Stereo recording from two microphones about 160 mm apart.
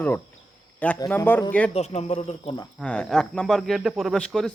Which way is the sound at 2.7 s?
5° left (ahead or behind).